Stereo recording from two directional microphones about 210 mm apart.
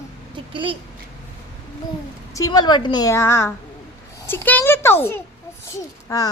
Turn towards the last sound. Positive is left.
turn(degrees=15)  # may be behind; listen again after turning